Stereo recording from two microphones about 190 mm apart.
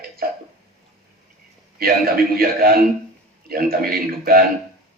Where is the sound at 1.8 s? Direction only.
50° right (ahead or behind).